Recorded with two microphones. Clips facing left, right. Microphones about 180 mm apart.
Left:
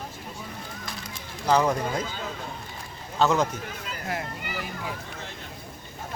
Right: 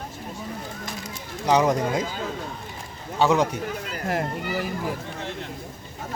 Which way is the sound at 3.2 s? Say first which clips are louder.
Right 2 dB; 15° right (ahead or behind).